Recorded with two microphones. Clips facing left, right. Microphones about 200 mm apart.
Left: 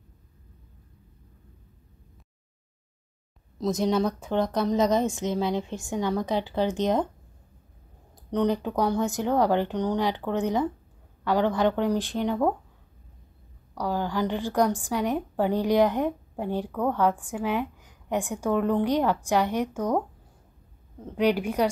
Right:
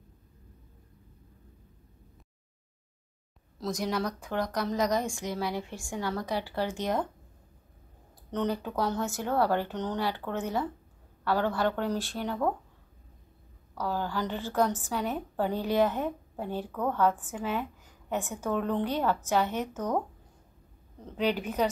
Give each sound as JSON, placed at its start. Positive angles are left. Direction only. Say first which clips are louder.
{"t": 3.5, "sound": "a woman's voice", "louder": "left 7 dB", "side_deg": 20}
{"t": 8.3, "sound": "a woman's voice", "louder": "left 6 dB", "side_deg": 15}
{"t": 13.7, "sound": "a woman's voice", "louder": "left 4 dB", "side_deg": 15}
{"t": 21.0, "sound": "a woman's voice", "louder": "left 5 dB", "side_deg": 10}